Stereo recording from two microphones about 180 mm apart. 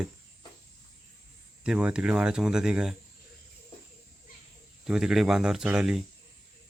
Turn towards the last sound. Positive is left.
turn(degrees=-5)  # may be behind; listen again after turning